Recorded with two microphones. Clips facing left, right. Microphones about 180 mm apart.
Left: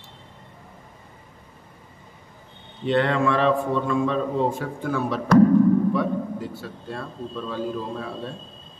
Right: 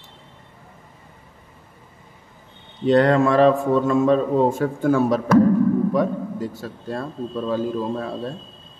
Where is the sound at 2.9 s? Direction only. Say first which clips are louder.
Right 5 dB; 40° right (ahead or behind).